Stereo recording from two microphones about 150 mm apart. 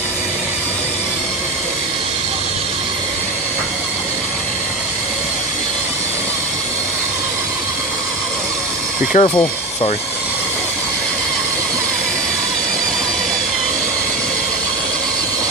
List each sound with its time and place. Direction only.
9.1 s speech: 45° left (ahead or behind)